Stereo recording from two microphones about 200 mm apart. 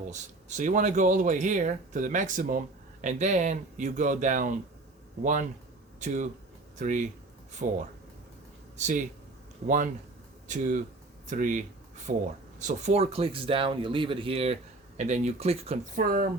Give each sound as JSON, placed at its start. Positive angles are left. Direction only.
{"t": 0.1, "sound": "speech", "side_deg": -35}
{"t": 8.8, "sound": "speech", "side_deg": -40}
{"t": 16.0, "sound": "speech", "side_deg": -45}